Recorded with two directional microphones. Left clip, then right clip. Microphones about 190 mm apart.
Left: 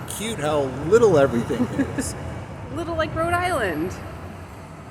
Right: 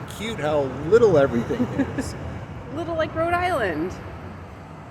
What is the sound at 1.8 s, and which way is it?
Speech, 5° right (ahead or behind).